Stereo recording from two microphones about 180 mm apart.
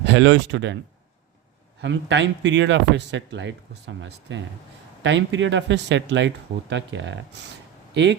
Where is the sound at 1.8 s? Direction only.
85° right.